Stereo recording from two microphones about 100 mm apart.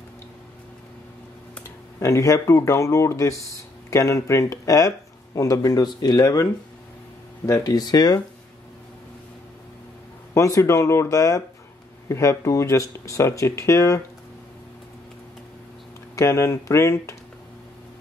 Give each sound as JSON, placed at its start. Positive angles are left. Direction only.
{"t": 1.6, "sound": "speech", "side_deg": 30}
{"t": 10.3, "sound": "speech", "side_deg": 30}
{"t": 16.2, "sound": "speech", "side_deg": 30}